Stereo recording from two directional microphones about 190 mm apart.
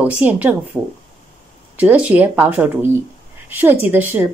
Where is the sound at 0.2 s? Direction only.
10° right (ahead or behind).